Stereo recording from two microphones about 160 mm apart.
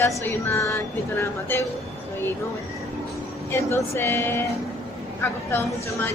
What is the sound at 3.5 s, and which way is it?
A woman's voice, 15° left (ahead or behind).